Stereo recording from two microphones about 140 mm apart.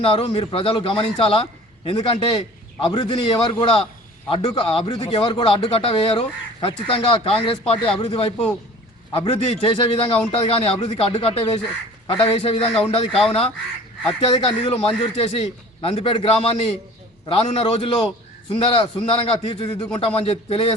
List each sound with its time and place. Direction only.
0.0 s a man's voice: 45° left (ahead or behind)